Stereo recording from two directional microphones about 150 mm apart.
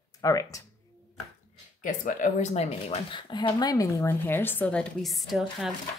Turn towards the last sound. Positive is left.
turn(degrees=0)  # may be behind; listen again after turning